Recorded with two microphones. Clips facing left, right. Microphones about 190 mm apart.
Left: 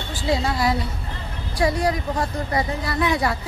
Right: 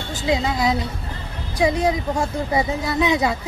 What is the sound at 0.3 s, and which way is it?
A woman's voice, 15° right (ahead or behind).